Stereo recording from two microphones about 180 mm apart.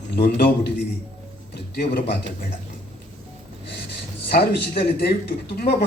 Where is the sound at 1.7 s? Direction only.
60° left (ahead or behind).